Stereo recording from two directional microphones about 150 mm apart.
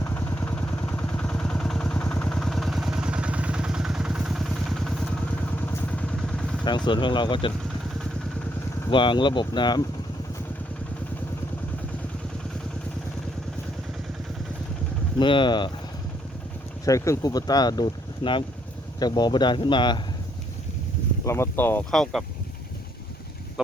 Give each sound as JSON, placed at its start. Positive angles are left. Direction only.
{"t": 0.0, "sound": "vehicle", "side_deg": 15}
{"t": 6.7, "sound": "speech", "side_deg": 30}
{"t": 8.9, "sound": "speech", "side_deg": 35}
{"t": 15.2, "sound": "speech", "side_deg": 30}
{"t": 16.8, "sound": "speech", "side_deg": 20}
{"t": 21.2, "sound": "speech", "side_deg": 15}
{"t": 21.8, "sound": "speech", "side_deg": 0}